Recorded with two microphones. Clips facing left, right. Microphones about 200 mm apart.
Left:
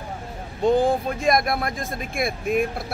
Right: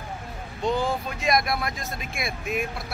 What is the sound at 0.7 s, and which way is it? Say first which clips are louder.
Speech: left 7 dB; 50° left (ahead or behind).